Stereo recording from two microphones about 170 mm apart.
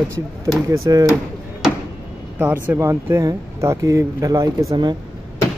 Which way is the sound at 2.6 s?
15° right (ahead or behind).